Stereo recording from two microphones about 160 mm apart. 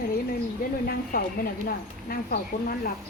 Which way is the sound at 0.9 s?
70° left (ahead or behind).